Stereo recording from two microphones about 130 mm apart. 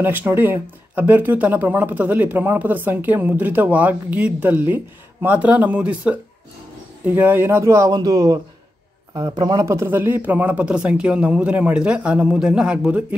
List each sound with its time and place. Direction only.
0.0 s a man's voice: 15° right (ahead or behind); by 9.7 s 35° right (ahead or behind)
9.7 s speech: 20° right (ahead or behind)